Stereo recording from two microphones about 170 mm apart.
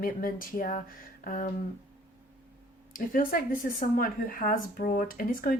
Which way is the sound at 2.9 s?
55° left (ahead or behind).